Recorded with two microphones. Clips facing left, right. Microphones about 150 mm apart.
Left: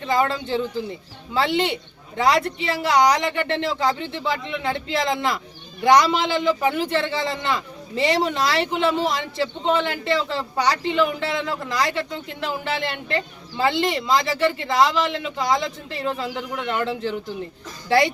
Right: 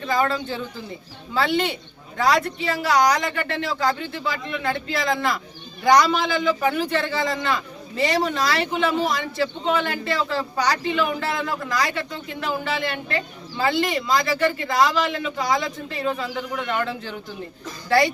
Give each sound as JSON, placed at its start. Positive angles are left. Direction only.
{"t": 0.1, "sound": "speech", "side_deg": 25}